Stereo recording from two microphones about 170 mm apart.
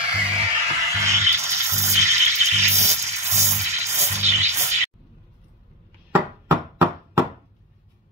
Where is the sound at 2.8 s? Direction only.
15° right (ahead or behind).